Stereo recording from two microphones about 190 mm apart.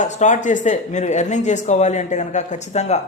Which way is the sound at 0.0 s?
40° left (ahead or behind).